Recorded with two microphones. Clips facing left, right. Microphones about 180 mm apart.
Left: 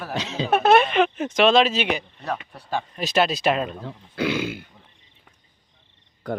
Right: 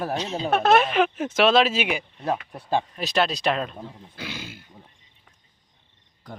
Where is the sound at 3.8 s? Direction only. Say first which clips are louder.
Left 11 dB; 65° left (ahead or behind).